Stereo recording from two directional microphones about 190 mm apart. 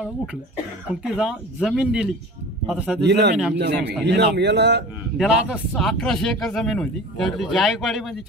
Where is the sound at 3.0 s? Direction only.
65° right (ahead or behind).